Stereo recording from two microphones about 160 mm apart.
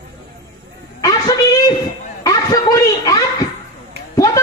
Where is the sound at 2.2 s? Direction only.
20° left (ahead or behind).